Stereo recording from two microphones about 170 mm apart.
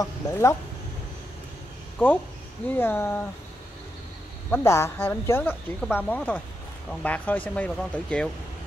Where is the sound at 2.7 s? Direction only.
15° left (ahead or behind).